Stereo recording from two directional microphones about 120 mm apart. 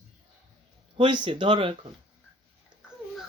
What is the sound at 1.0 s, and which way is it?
Speech, 40° right (ahead or behind).